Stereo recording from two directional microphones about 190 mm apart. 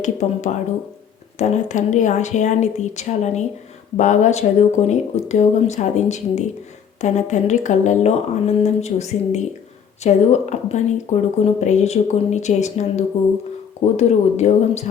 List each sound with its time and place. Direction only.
0.0 s speech: 40° left (ahead or behind)